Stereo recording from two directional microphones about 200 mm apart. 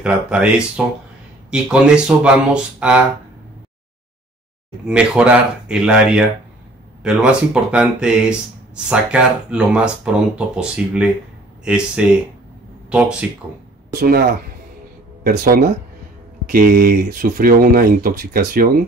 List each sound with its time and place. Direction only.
0.0 s speech: 5° right (ahead or behind)
4.8 s speech: 5° right (ahead or behind)
13.9 s speech: 50° right (ahead or behind)
15.2 s speech: 50° right (ahead or behind)